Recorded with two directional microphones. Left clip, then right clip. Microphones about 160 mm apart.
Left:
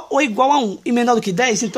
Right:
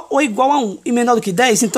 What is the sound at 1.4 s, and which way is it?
Speech, 30° right (ahead or behind).